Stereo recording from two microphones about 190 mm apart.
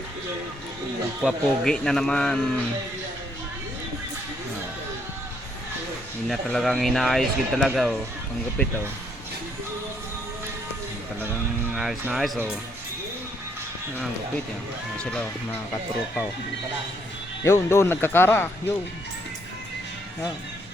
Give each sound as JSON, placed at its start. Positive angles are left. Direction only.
{"t": 1.2, "sound": "speech", "side_deg": 5}
{"t": 6.2, "sound": "speech", "side_deg": 0}
{"t": 11.7, "sound": "speech", "side_deg": -5}
{"t": 14.9, "sound": "speech", "side_deg": 5}
{"t": 17.4, "sound": "speech", "side_deg": 15}